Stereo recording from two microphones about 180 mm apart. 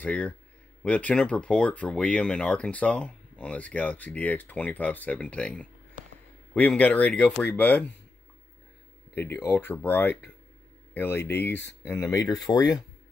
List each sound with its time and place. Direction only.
0.0 s speech: 10° left (ahead or behind)
6.0 s a sound: 45° right (ahead or behind)
6.5 s speech: 10° left (ahead or behind)
9.1 s speech: 10° left (ahead or behind)